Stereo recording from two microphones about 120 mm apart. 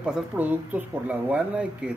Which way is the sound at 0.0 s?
10° right (ahead or behind).